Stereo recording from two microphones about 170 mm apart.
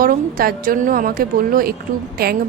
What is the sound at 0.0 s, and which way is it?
A woman's voice, 60° right (ahead or behind).